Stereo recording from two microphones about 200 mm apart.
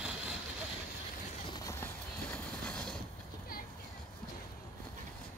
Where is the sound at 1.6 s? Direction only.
15° left (ahead or behind).